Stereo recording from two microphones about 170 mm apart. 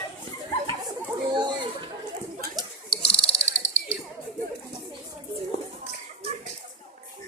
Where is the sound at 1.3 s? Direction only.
25° right (ahead or behind).